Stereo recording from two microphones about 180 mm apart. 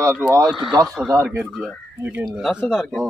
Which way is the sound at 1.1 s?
15° right (ahead or behind).